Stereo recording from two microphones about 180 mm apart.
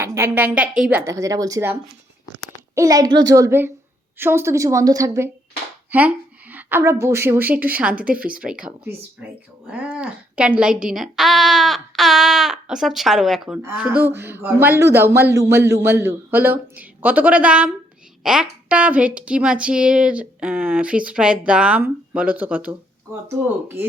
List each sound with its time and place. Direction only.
0.0 s a woman's voice: 15° right (ahead or behind)